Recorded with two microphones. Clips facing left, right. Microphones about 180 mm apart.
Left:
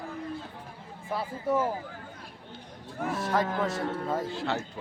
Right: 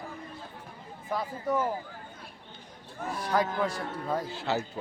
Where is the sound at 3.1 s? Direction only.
Centre (ahead or behind).